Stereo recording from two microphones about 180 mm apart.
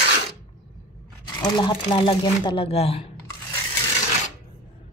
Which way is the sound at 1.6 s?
25° left (ahead or behind).